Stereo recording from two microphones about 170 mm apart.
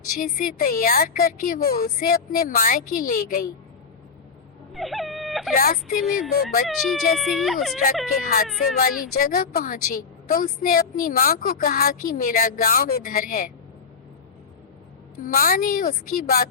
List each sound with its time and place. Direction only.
0.2 s a woman's voice: 55° left (ahead or behind)
4.7 s wail: centre (ahead or behind)
5.5 s a woman's voice: 55° left (ahead or behind)
6.7 s speech: centre (ahead or behind)
8.2 s a woman's voice: 50° left (ahead or behind)
15.2 s a woman's voice: 55° left (ahead or behind)